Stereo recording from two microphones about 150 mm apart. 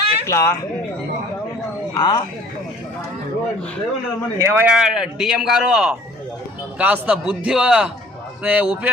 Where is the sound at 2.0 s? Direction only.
25° left (ahead or behind).